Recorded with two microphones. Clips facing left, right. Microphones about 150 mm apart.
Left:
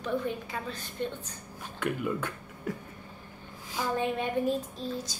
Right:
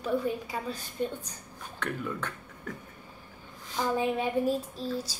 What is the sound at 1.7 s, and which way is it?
A man's voice, 10° left (ahead or behind).